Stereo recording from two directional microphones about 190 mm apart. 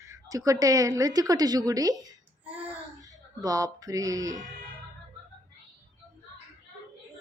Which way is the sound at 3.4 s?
20° right (ahead or behind).